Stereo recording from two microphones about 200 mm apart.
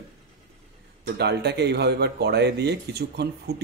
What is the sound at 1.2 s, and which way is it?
Speech, 55° right (ahead or behind).